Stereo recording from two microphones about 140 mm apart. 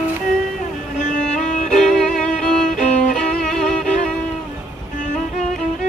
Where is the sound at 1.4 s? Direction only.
60° left (ahead or behind).